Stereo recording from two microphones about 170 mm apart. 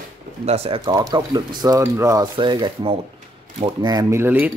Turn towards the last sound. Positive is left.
turn(degrees=-10)  # may be behind; listen again after turning